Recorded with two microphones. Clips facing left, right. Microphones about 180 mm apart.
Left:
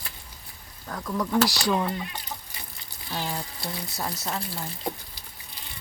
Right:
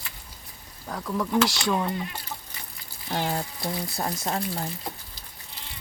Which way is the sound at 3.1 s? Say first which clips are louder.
Right 4 dB; 50° right (ahead or behind).